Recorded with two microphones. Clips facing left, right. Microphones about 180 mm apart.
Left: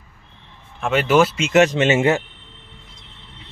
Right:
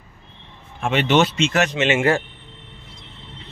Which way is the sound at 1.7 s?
45° left (ahead or behind).